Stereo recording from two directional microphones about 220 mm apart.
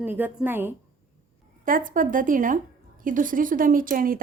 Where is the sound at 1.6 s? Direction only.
40° right (ahead or behind).